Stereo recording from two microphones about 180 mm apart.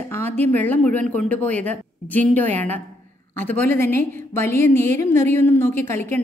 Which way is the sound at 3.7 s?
15° left (ahead or behind).